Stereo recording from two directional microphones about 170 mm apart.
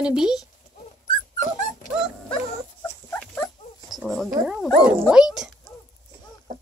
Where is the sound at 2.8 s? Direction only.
10° left (ahead or behind).